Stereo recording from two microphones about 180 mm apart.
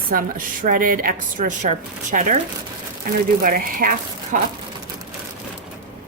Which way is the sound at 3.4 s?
50° right (ahead or behind).